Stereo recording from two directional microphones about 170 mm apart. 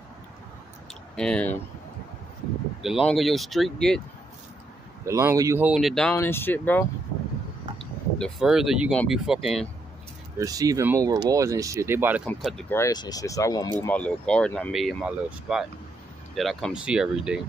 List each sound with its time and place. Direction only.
1.1 s speech: 5° left (ahead or behind)
3.1 s speech: centre (ahead or behind)
5.0 s speech: 15° right (ahead or behind); by 6.1 s centre (ahead or behind)
6.1 s speech: 15° left (ahead or behind)
7.8 s speech: centre (ahead or behind)
10.4 s speech: 20° right (ahead or behind)
12.4 s speech: centre (ahead or behind)
12.6 s speech: 15° left (ahead or behind)
13.7 s speech: 10° left (ahead or behind)